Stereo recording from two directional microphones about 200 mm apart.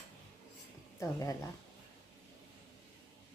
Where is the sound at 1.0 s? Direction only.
15° left (ahead or behind).